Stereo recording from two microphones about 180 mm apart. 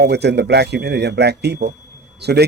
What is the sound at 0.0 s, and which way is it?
Speech, 65° right (ahead or behind).